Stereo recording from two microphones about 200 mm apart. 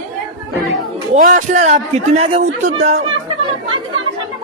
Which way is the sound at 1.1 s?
40° right (ahead or behind).